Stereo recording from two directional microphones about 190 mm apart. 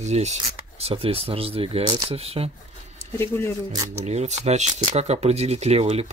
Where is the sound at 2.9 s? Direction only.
10° left (ahead or behind).